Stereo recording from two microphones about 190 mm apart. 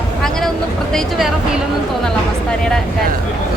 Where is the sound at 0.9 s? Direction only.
Centre (ahead or behind).